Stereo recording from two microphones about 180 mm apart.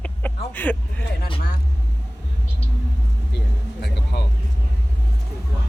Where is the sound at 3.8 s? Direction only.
65° left (ahead or behind).